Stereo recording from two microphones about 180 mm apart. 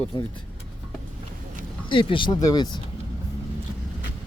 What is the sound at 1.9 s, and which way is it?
Speech, 30° left (ahead or behind).